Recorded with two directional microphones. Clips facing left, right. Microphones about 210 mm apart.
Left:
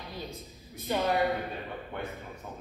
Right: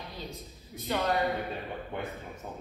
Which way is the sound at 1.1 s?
Centre (ahead or behind).